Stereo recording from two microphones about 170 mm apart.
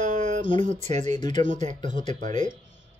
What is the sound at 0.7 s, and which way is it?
Speech, 45° right (ahead or behind).